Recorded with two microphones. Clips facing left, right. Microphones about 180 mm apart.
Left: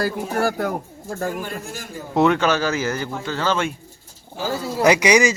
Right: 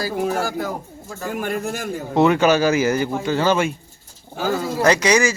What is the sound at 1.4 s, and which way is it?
Speech, 60° right (ahead or behind).